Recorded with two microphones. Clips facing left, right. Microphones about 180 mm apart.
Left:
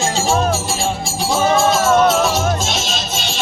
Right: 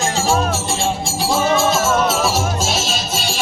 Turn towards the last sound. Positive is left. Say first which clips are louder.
# right 1 dB
turn(degrees=-10)  # may be behind; listen again after turning